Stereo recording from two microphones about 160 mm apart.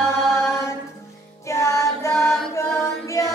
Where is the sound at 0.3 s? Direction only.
15° left (ahead or behind).